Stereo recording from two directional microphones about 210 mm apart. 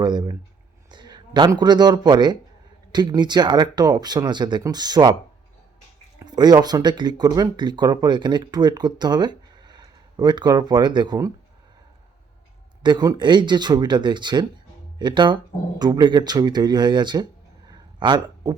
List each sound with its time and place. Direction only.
0.0 s speech: 20° right (ahead or behind)
6.1 s speech: 20° right (ahead or behind)
12.8 s speech: 20° right (ahead or behind)
17.7 s a sound: 20° right (ahead or behind)